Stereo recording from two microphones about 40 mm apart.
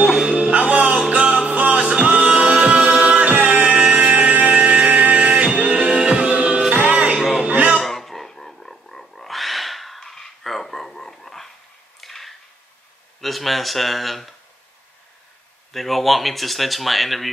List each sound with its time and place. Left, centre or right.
0.0 s music: centre
0.3 s music: right
2.1 s music: right
2.4 s music: right
2.7 s music: right
5.3 s music: centre; by 7.2 s right
7.2 s a sound: centre
7.8 s a sound: centre
10.0 s a sound: centre
15.7 s speech: centre